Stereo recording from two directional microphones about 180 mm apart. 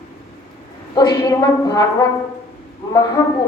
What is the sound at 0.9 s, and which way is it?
Speech, 20° left (ahead or behind).